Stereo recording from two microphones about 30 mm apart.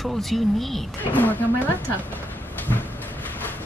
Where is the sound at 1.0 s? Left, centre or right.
Left.